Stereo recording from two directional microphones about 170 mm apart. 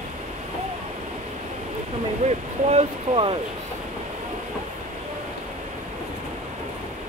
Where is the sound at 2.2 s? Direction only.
35° right (ahead or behind).